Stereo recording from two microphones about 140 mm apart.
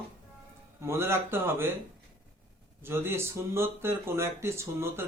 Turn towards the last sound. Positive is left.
turn(degrees=-20)  # may be behind; listen again after turning